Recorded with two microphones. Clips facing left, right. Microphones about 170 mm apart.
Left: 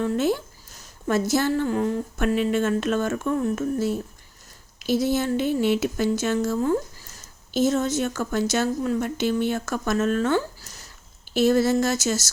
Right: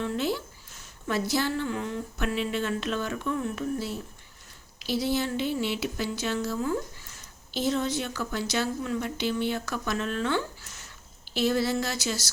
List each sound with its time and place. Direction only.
0.0 s speech: 50° left (ahead or behind)